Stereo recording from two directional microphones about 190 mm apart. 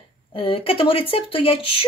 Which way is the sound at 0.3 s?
30° left (ahead or behind).